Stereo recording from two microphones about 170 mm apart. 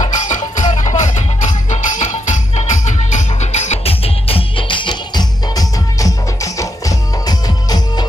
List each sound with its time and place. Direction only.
0.0 s music: 45° left (ahead or behind); by 8.0 s 25° left (ahead or behind)